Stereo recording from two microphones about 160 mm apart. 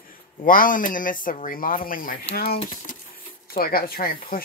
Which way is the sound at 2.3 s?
75° left (ahead or behind).